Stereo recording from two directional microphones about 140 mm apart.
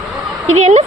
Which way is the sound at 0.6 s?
50° right (ahead or behind).